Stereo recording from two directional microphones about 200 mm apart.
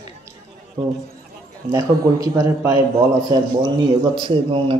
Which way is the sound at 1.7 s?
15° right (ahead or behind).